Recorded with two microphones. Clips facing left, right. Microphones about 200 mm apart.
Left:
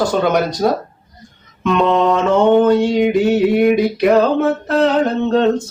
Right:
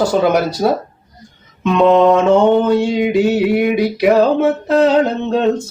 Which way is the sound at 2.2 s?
5° right (ahead or behind).